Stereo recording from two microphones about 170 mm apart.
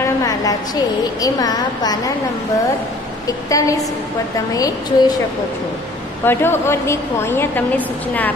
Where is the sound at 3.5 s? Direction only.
20° left (ahead or behind).